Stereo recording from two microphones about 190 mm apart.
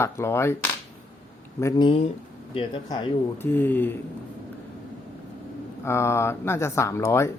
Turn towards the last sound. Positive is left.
turn(degrees=15)  # may be behind; listen again after turning